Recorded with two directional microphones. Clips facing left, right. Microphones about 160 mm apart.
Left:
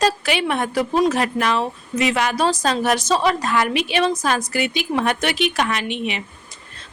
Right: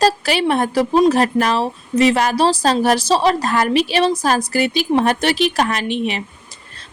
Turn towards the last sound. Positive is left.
turn(degrees=-35)  # may be behind; listen again after turning